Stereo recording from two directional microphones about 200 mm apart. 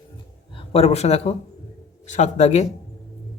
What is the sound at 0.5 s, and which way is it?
A man's voice, 30° left (ahead or behind).